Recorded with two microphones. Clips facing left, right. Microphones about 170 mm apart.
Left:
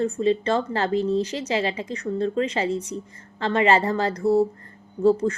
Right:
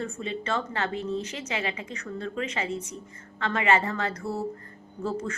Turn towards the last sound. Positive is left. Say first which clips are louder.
# left 12 dB
turn(degrees=35)  # may be behind; listen again after turning